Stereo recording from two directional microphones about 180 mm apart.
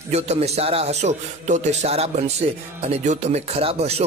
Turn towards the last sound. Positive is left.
turn(degrees=-35)  # may be behind; listen again after turning